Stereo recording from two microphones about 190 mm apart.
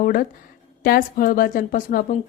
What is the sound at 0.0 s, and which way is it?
A woman's voice, 45° left (ahead or behind).